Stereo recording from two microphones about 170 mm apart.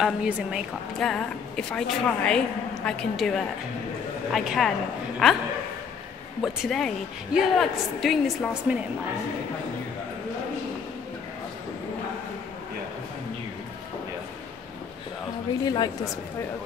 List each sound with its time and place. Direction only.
0.0 s a woman's voice: 5° right (ahead or behind)
6.4 s a woman's voice: centre (ahead or behind)
15.6 s a woman's voice: 25° left (ahead or behind)